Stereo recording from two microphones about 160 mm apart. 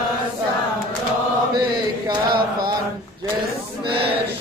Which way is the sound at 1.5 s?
25° right (ahead or behind).